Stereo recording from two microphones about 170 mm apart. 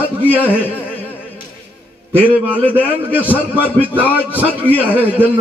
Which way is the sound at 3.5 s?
10° right (ahead or behind).